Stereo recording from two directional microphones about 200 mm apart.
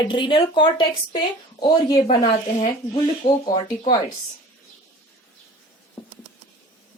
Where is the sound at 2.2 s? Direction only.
30° left (ahead or behind).